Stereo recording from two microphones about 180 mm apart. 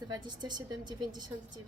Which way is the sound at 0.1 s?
25° right (ahead or behind).